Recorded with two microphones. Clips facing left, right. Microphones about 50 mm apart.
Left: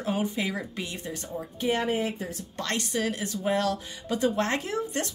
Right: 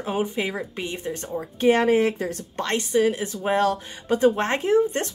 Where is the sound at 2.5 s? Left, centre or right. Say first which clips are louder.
Right 7 dB; right.